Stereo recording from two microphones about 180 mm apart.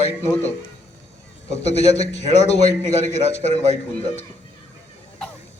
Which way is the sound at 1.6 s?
35° left (ahead or behind).